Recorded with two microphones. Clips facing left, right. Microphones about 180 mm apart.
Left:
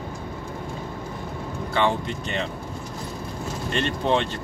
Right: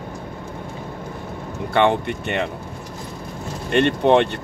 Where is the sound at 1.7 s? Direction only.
60° right (ahead or behind).